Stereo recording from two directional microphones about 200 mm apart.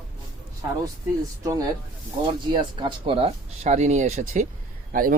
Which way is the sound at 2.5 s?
25° right (ahead or behind).